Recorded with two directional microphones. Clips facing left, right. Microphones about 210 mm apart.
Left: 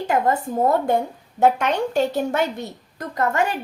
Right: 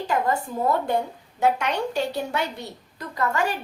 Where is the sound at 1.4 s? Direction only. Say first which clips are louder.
Left 4 dB; 50° left (ahead or behind).